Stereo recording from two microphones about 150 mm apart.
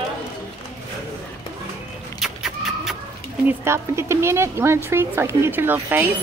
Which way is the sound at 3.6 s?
15° right (ahead or behind).